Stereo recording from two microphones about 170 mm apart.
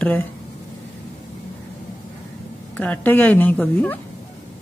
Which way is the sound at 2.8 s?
10° left (ahead or behind).